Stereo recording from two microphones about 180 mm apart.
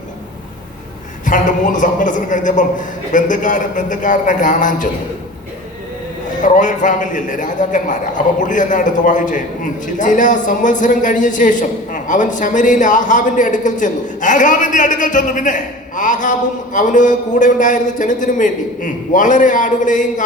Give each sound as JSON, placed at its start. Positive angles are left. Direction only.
{"t": 1.2, "sound": "a man's voice", "side_deg": 45}
{"t": 6.4, "sound": "a man's voice", "side_deg": 45}